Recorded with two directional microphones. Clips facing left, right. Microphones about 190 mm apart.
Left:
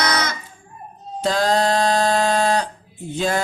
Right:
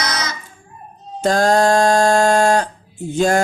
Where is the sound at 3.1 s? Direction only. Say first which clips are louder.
Right 6 dB; 45° right (ahead or behind).